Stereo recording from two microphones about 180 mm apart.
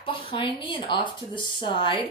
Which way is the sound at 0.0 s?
30° left (ahead or behind).